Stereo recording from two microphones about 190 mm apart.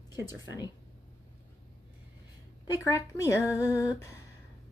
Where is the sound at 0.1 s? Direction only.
20° left (ahead or behind).